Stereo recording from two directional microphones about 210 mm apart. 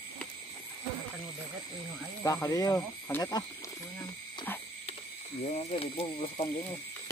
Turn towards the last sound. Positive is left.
turn(degrees=25)  # may be behind; listen again after turning